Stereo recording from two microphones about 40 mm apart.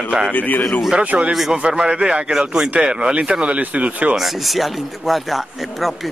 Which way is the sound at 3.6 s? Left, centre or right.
Right.